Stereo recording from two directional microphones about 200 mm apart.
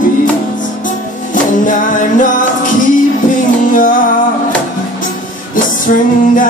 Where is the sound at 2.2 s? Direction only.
40° left (ahead or behind).